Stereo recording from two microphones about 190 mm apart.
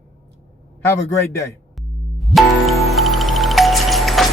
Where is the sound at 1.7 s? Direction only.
Centre (ahead or behind).